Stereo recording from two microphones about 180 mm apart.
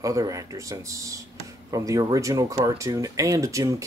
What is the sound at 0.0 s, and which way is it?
Speech, 20° right (ahead or behind).